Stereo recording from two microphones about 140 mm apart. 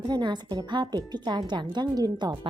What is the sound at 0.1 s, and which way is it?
A woman's voice, 30° right (ahead or behind).